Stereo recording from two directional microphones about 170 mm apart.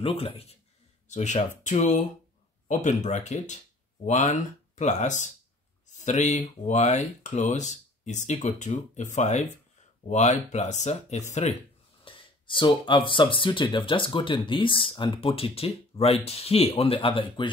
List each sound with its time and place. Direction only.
0.0 s speech: 35° left (ahead or behind)
12.0 s speech: 30° left (ahead or behind)